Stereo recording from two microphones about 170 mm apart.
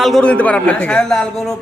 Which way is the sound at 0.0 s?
5° left (ahead or behind).